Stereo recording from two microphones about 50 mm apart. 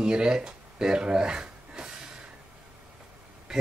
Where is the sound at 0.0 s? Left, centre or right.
Centre.